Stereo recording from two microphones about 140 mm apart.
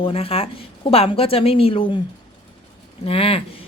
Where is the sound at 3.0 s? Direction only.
45° left (ahead or behind).